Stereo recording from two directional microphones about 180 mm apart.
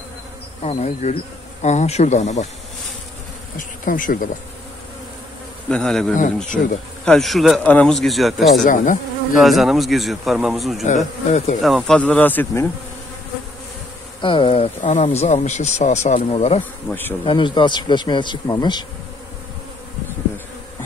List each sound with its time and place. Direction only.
0.6 s speech: 35° left (ahead or behind)
3.5 s bee: 50° left (ahead or behind)
5.7 s a man's voice: 5° left (ahead or behind)
6.1 s speech: 45° left (ahead or behind)
7.1 s a man's voice: centre (ahead or behind)
8.6 s speech: 45° left (ahead or behind)
9.4 s a man's voice: centre (ahead or behind)
11.3 s speech: 35° left (ahead or behind)
11.6 s speech: centre (ahead or behind)
14.2 s speech: 30° left (ahead or behind)
14.8 s speech: 40° left (ahead or behind); by 18.9 s 25° left (ahead or behind)